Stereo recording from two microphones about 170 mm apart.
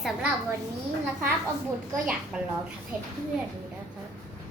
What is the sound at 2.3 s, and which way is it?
Speech, 5° right (ahead or behind).